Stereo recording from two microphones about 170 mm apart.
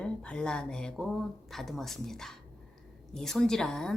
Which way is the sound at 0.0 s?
5° left (ahead or behind).